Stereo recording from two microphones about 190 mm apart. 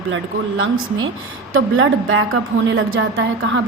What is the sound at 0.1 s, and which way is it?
A woman's voice, 90° right.